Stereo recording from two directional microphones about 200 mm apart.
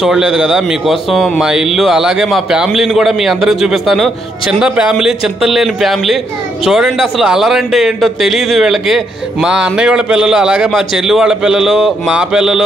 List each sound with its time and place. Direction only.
0.0 s a man's voice: 5° right (ahead or behind)